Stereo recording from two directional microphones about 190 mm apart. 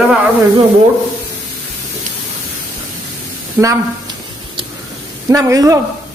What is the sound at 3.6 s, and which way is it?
Speech, 10° right (ahead or behind).